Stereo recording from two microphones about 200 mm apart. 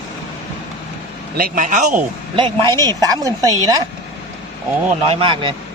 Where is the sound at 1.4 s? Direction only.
40° right (ahead or behind).